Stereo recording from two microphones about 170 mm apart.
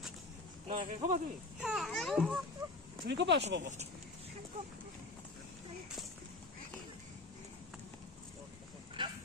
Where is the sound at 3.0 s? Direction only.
90° right.